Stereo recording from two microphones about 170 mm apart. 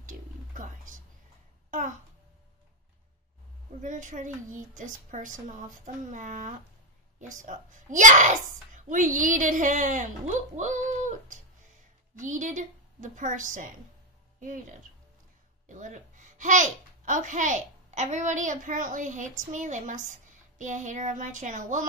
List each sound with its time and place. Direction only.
1.7 s a child's voice: 50° right (ahead or behind)
3.8 s a child's voice: 45° right (ahead or behind)
15.7 s a child's voice: 45° right (ahead or behind)